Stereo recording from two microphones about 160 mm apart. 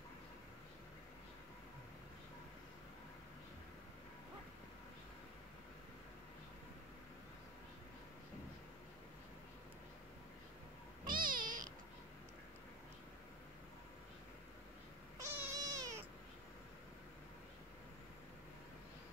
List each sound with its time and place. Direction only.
11.1 s cat: 60° right (ahead or behind)
15.1 s cat: 15° right (ahead or behind)